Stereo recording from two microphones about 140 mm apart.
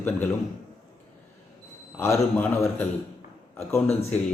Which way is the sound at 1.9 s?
20° left (ahead or behind).